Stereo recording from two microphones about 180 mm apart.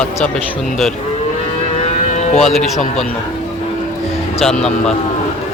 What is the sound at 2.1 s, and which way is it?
Music, 40° left (ahead or behind).